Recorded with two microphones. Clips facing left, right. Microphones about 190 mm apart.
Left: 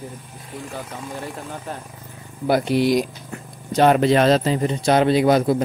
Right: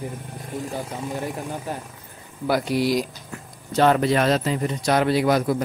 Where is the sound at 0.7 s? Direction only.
15° right (ahead or behind).